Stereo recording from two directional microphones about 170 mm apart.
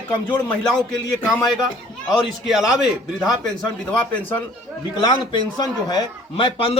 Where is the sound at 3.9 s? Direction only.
10° left (ahead or behind).